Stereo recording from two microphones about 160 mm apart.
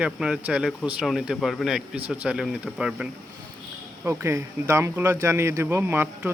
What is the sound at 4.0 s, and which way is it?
Speech, 15° right (ahead or behind).